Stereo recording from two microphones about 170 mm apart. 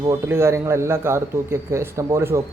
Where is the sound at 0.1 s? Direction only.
15° right (ahead or behind).